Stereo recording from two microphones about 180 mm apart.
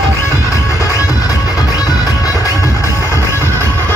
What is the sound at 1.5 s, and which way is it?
Music, 20° left (ahead or behind).